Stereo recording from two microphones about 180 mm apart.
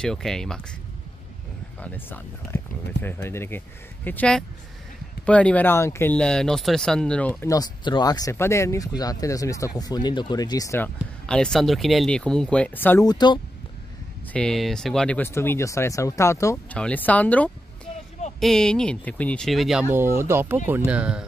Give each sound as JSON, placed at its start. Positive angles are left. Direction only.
{"t": 0.0, "sound": "speech", "side_deg": 5}
{"t": 1.8, "sound": "speech", "side_deg": 10}
{"t": 7.4, "sound": "speech", "side_deg": 20}
{"t": 11.2, "sound": "speech", "side_deg": 5}
{"t": 13.0, "sound": "speech", "side_deg": 25}
{"t": 14.2, "sound": "speech", "side_deg": 5}